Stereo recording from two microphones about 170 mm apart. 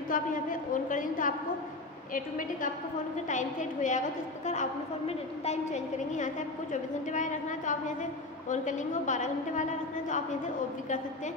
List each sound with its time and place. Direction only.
0.1 s a woman's voice: 50° left (ahead or behind)